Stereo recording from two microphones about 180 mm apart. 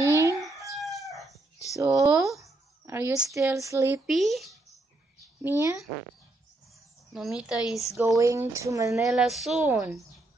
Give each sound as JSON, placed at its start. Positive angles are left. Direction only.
{"t": 0.0, "sound": "chicken", "side_deg": -15}
{"t": 0.4, "sound": "chicken", "side_deg": 0}
{"t": 1.8, "sound": "a sound", "side_deg": -15}
{"t": 2.4, "sound": "speech", "side_deg": -15}
{"t": 4.1, "sound": "speech", "side_deg": 0}
{"t": 5.4, "sound": "speech", "side_deg": -15}
{"t": 7.2, "sound": "speech", "side_deg": -5}
{"t": 8.2, "sound": "speech", "side_deg": -15}
{"t": 9.0, "sound": "speech", "side_deg": 0}